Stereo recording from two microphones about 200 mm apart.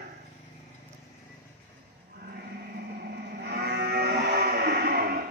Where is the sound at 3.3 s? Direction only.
55° right (ahead or behind).